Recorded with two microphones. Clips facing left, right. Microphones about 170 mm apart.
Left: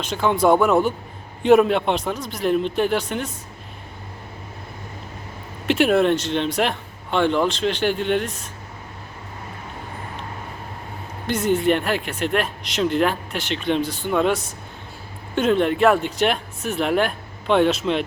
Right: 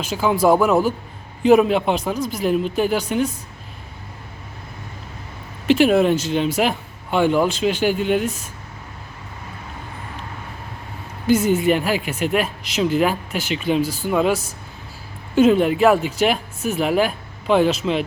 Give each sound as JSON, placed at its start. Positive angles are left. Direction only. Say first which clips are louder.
{"t": 0.0, "sound": "speech", "louder": "right 1 dB", "side_deg": -5}
{"t": 5.6, "sound": "speech", "louder": "right 2 dB", "side_deg": 0}
{"t": 11.3, "sound": "speech", "louder": "right 3 dB", "side_deg": -5}